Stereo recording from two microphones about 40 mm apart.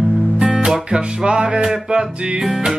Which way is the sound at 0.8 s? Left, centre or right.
Right.